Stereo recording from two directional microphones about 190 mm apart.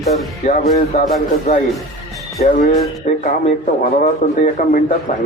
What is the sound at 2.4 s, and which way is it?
A man's voice, 40° left (ahead or behind).